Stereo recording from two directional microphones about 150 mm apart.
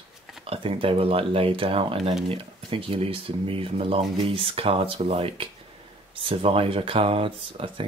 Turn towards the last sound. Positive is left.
turn(degrees=-35)  # may be behind; listen again after turning